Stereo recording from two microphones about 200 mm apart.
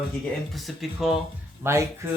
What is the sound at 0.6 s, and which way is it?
Speech, centre (ahead or behind).